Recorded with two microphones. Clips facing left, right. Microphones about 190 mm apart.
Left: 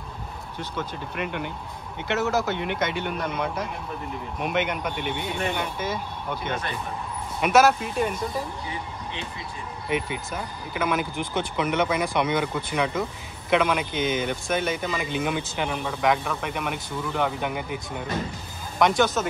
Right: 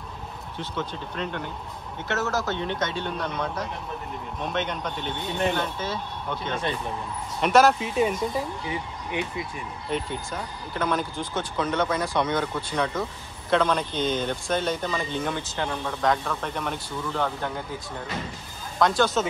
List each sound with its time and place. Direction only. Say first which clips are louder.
1.1 s speech: left 2 dB; 15° left (ahead or behind)
7.3 s speech: even; 5° left (ahead or behind)
9.8 s speech: left 2 dB; 10° left (ahead or behind)